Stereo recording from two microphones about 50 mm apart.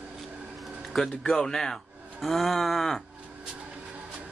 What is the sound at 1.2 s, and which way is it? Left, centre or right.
Speech, centre.